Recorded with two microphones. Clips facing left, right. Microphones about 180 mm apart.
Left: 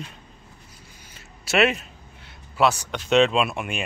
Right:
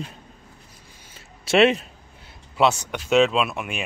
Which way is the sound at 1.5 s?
30° right (ahead or behind).